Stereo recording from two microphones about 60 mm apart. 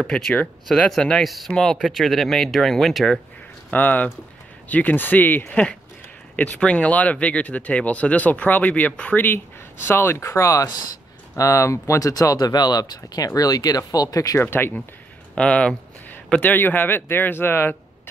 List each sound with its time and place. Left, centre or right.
0.0 s speech: centre
1.2 s speech: centre
1.5 s speech: centre
1.8 s speech: centre
3.7 s speech: left
6.3 s speech: left
9.2 s speech: left
10.2 s speech: left
12.1 s speech: left
14.4 s speech: left
15.3 s speech: centre
16.3 s speech: left